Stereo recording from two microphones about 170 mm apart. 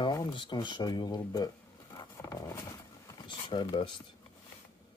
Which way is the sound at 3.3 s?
30° left (ahead or behind).